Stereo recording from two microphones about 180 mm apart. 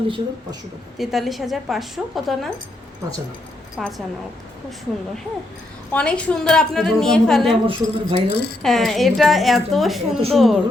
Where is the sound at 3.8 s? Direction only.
Centre (ahead or behind).